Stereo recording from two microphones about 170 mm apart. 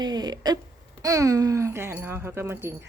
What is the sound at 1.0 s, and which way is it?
Speech, 20° right (ahead or behind).